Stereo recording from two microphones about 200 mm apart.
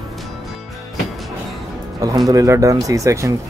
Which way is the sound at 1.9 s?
15° right (ahead or behind).